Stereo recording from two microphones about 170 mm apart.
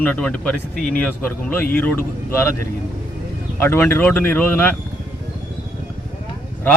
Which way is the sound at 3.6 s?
15° left (ahead or behind).